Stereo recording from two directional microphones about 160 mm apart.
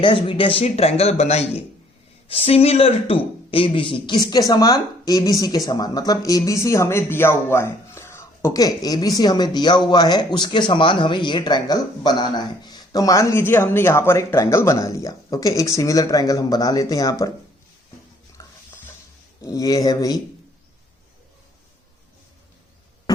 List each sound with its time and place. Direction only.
0.0 s speech: 30° left (ahead or behind)
18.4 s stir: 20° left (ahead or behind)
19.4 s speech: 20° left (ahead or behind)
23.1 s hum: 25° left (ahead or behind)